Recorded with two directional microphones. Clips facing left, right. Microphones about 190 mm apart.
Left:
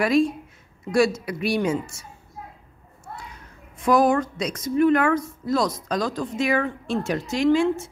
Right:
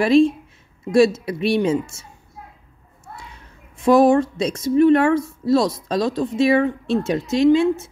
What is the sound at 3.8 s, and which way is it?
A woman's voice, 25° right (ahead or behind).